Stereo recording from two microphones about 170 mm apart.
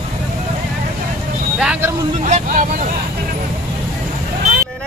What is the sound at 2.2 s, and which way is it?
Speech, 45° right (ahead or behind).